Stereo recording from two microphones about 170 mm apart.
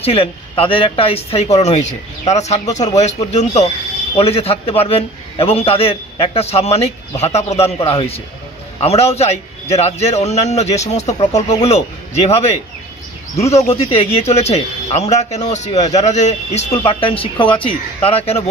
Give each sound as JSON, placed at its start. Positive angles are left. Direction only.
{"t": 0.0, "sound": "speech", "side_deg": 35}
{"t": 13.7, "sound": "speech", "side_deg": 35}